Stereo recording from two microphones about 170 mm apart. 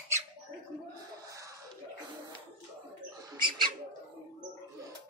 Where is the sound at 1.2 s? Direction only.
20° right (ahead or behind).